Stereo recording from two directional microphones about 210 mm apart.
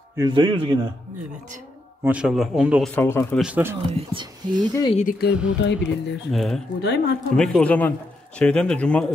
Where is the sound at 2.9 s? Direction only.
10° left (ahead or behind).